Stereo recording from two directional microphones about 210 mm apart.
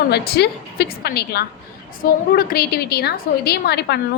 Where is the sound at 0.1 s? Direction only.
50° left (ahead or behind).